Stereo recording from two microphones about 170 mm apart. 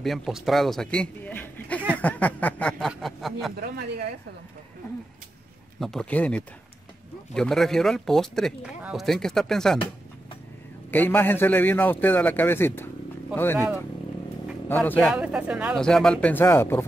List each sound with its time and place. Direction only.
0.0 s a man's voice: centre (ahead or behind)
3.6 s speech: 65° right (ahead or behind)
5.8 s a man's voice: 5° left (ahead or behind)
10.9 s a man's voice: 10° left (ahead or behind)
14.7 s speech: 10° left (ahead or behind)
15.1 s speech: 5° right (ahead or behind)
15.7 s a man's voice: 5° left (ahead or behind)